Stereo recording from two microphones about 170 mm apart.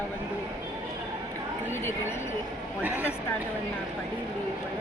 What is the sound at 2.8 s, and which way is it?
Speech, 10° right (ahead or behind).